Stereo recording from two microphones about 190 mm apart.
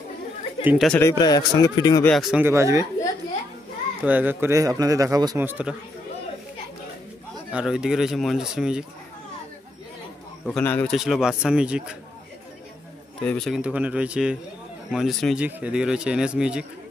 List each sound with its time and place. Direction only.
0.7 s speech: centre (ahead or behind)
0.9 s speech: 20° left (ahead or behind)
2.0 s speech: centre (ahead or behind)
2.4 s speech: 15° right (ahead or behind)
4.0 s speech: 10° right (ahead or behind)
7.5 s speech: 5° right (ahead or behind)
10.4 s speech: 5° left (ahead or behind)
11.0 s speech: centre (ahead or behind)
13.2 s speech: 5° left (ahead or behind)